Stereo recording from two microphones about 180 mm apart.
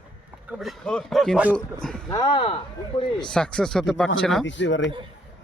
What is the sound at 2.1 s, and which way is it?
Speech, 25° left (ahead or behind).